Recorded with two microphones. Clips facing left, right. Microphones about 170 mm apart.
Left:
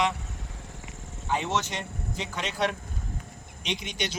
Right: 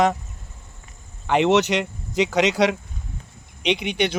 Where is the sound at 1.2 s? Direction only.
75° right (ahead or behind).